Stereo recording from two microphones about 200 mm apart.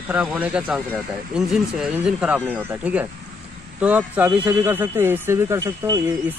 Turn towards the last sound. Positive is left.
turn(degrees=-15)  # may be behind; listen again after turning